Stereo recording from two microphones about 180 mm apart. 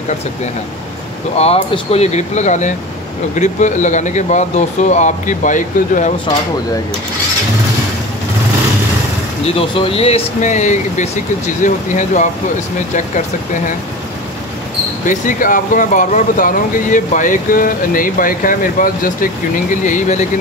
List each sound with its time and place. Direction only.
1.3 s speech: 35° left (ahead or behind)
9.6 s speech: 30° left (ahead or behind)
15.0 s speech: 50° left (ahead or behind)